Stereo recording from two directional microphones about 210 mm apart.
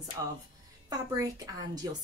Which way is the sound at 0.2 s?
15° right (ahead or behind).